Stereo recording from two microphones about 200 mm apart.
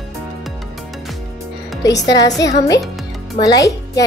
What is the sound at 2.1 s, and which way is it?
A child's voice, 20° left (ahead or behind).